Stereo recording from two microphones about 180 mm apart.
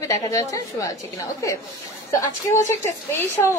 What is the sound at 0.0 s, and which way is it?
Speech, 15° left (ahead or behind).